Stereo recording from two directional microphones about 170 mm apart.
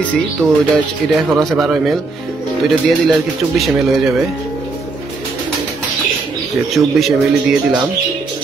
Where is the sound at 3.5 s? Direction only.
Centre (ahead or behind).